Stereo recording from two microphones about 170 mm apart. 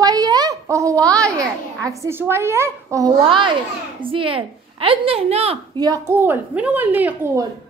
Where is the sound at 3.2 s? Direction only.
30° right (ahead or behind).